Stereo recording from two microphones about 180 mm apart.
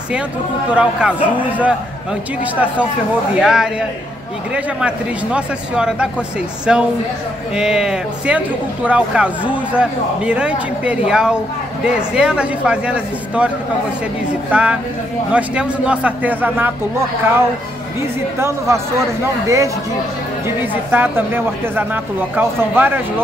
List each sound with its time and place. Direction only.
0.7 s speech: 5° right (ahead or behind)
14.5 s speech: 5° right (ahead or behind)
18.4 s speech: 15° right (ahead or behind)